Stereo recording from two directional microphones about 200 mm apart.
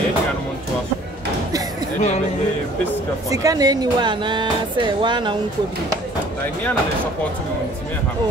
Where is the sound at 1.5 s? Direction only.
20° right (ahead or behind).